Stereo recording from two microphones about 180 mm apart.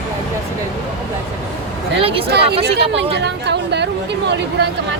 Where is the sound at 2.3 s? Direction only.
65° right (ahead or behind).